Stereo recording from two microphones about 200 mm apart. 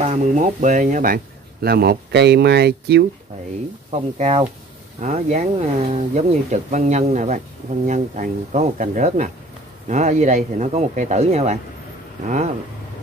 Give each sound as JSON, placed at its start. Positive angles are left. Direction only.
{"t": 0.0, "sound": "speech", "side_deg": -35}
{"t": 3.9, "sound": "speech", "side_deg": -30}